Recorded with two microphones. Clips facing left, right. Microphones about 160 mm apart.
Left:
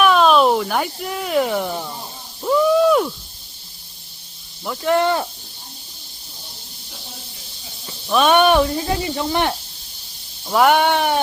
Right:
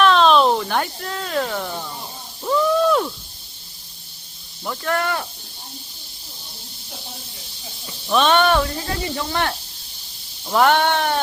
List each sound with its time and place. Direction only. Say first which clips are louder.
0.0 s a sound: left 1 dB; 5° left (ahead or behind)
1.0 s speech: left 4 dB; 15° left (ahead or behind)
2.4 s a sound: left 3 dB; 5° left (ahead or behind)
4.8 s speech: left 6 dB; 20° left (ahead or behind)
8.0 s speech: left 1 dB; centre (ahead or behind)
8.3 s speech: left 5 dB; 15° left (ahead or behind)
10.4 s speech: left 2 dB; 5° left (ahead or behind)